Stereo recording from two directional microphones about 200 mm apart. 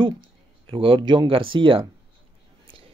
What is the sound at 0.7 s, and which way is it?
Speech, 25° right (ahead or behind).